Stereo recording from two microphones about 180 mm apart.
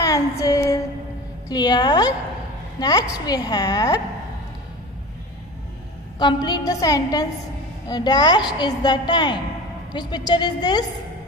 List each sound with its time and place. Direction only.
0.0 s female singing: 20° left (ahead or behind)
1.5 s a woman's voice: 20° left (ahead or behind)
6.1 s a woman's voice: 25° left (ahead or behind)